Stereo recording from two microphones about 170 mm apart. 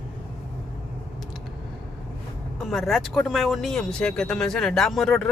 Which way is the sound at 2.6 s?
Centre (ahead or behind).